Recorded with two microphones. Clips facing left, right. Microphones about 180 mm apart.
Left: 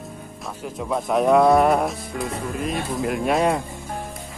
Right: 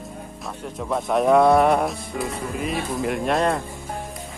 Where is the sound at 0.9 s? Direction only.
Centre (ahead or behind).